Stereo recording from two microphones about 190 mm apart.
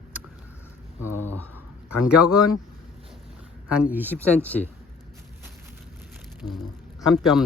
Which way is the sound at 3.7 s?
5° right (ahead or behind).